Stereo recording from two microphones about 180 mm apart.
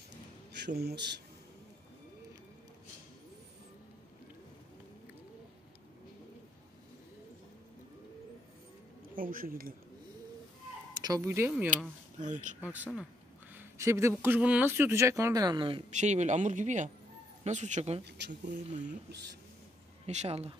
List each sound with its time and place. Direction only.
0.5 s a man's voice: 70° right (ahead or behind)
9.1 s speech: 50° right (ahead or behind)
11.0 s speech: 20° right (ahead or behind)
12.2 s speech: 45° right (ahead or behind)
12.6 s speech: 10° right (ahead or behind); by 15.8 s 25° right (ahead or behind)
15.9 s speech: 40° right (ahead or behind)
18.0 s speech: 70° right (ahead or behind)
18.7 s speech: 45° right (ahead or behind)
20.1 s speech: 35° right (ahead or behind)